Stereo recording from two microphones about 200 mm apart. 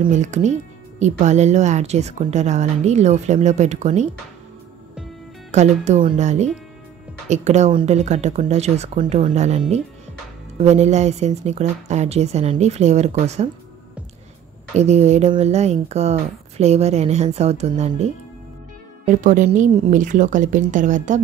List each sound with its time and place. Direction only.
0.1 s speech: 35° right (ahead or behind)
5.5 s speech: 35° right (ahead or behind)
14.8 s speech: 35° right (ahead or behind)